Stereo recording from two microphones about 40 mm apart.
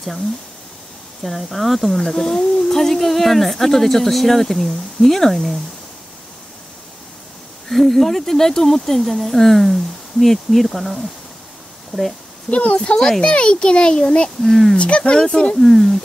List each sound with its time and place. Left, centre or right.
1.2 s speech: centre
7.7 s speech: centre
12.4 s speech: left
12.9 s speech: centre
13.3 s a child's voice: left
14.4 s speech: centre
14.8 s a child's voice: left
15.6 s speech: centre